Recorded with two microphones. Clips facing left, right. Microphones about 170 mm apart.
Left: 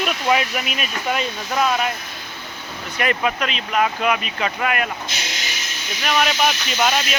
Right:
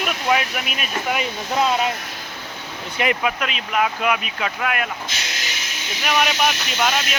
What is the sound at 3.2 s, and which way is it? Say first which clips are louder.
Speech: left 1 dB; 5° right (ahead or behind).